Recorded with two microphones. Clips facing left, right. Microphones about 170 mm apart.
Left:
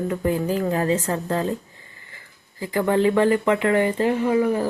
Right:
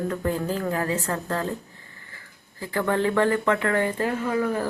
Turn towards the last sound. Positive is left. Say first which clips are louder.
# left 5 dB
turn(degrees=15)  # may be behind; listen again after turning